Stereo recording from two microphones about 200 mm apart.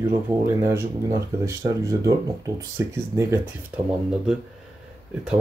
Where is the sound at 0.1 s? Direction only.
15° right (ahead or behind).